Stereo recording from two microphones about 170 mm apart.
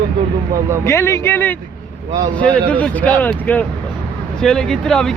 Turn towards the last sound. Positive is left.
turn(degrees=5)  # may be behind; listen again after turning